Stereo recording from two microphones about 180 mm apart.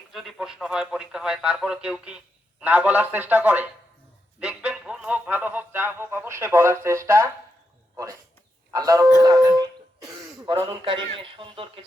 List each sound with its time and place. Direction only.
0.1 s speech: centre (ahead or behind)
8.7 s speech: 20° right (ahead or behind)